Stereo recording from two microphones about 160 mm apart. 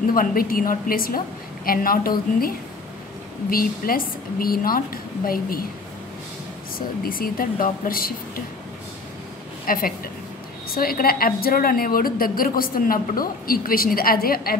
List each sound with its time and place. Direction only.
0.1 s a woman's voice: 60° left (ahead or behind)
7.1 s a woman's voice: 65° left (ahead or behind)
9.7 s a woman's voice: 60° left (ahead or behind)